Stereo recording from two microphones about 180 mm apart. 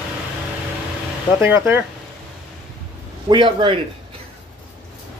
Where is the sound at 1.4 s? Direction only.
10° right (ahead or behind).